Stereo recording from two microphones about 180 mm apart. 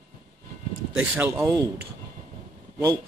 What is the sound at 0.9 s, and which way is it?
Speech, 5° right (ahead or behind).